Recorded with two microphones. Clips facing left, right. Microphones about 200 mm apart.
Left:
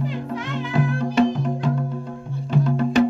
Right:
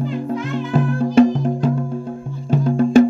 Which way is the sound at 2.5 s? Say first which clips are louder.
Right 4 dB; 45° right (ahead or behind).